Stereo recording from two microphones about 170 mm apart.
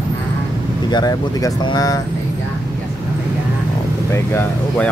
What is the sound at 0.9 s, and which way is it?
Speech, 25° left (ahead or behind).